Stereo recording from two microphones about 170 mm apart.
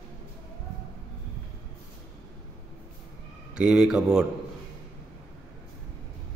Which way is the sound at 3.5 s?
5° right (ahead or behind).